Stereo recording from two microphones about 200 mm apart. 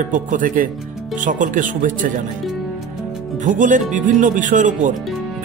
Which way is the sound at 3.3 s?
40° right (ahead or behind).